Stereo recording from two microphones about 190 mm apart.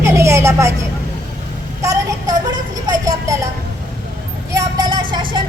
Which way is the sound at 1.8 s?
15° right (ahead or behind).